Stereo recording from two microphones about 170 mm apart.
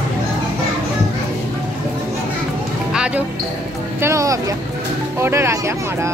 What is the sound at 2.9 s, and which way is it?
Music, 5° right (ahead or behind).